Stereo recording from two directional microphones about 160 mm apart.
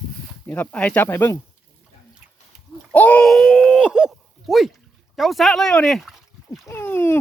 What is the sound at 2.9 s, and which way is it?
Speech, 10° left (ahead or behind).